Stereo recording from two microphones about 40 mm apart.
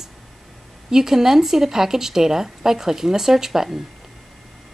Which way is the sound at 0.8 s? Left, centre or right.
Centre.